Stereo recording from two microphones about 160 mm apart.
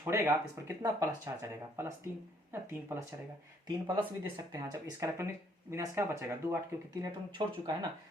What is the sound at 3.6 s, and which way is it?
Speech, 30° right (ahead or behind).